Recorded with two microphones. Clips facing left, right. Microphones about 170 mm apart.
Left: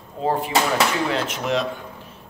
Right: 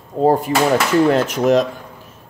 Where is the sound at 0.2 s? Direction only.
45° right (ahead or behind).